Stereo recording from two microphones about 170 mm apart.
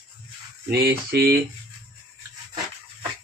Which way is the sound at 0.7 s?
75° right (ahead or behind).